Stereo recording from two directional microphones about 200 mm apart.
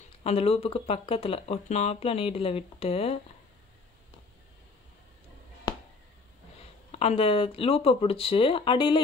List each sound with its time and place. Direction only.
0.2 s speech: 30° left (ahead or behind)
6.9 s speech: 30° left (ahead or behind)